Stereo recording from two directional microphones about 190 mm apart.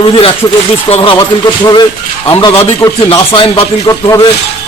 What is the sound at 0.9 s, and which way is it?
Speech, 35° left (ahead or behind).